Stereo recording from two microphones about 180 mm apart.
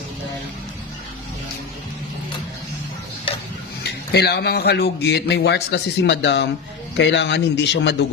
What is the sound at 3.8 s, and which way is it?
Speech, 65° left (ahead or behind).